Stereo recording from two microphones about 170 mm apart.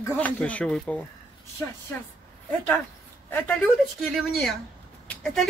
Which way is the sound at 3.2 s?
10° left (ahead or behind).